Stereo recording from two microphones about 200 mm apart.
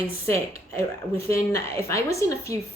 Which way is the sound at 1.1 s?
15° left (ahead or behind).